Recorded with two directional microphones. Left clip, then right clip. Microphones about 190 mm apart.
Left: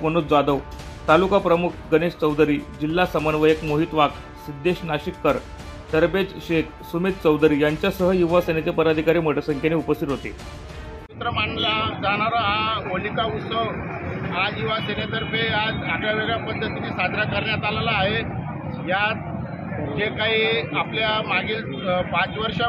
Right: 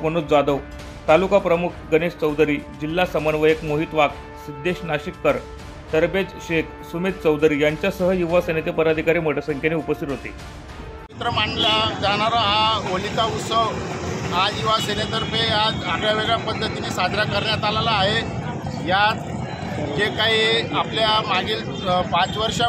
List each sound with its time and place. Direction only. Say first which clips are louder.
0.0 s speech: right 1 dB; 10° right (ahead or behind)
11.1 s speech: right 3 dB; 25° right (ahead or behind)